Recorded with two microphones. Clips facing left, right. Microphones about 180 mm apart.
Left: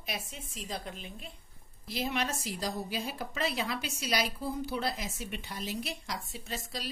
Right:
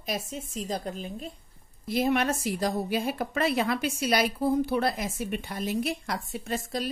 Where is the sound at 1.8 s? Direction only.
55° right (ahead or behind).